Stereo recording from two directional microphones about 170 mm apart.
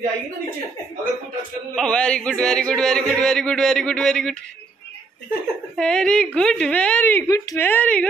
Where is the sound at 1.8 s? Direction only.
5° left (ahead or behind).